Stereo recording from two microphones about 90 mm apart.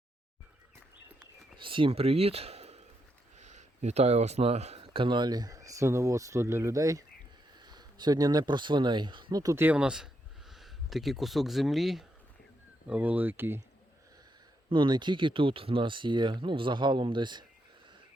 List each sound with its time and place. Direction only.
1.5 s speech: 70° right (ahead or behind); by 2.5 s 90° right
4.4 s speech: 85° right; by 7.0 s 40° right (ahead or behind)
7.6 s speech: 50° right (ahead or behind)
9.3 s speech: 45° right (ahead or behind)
9.6 s speech: 15° right (ahead or behind)
12.9 s speech: 20° right (ahead or behind)
14.7 s speech: 60° right (ahead or behind)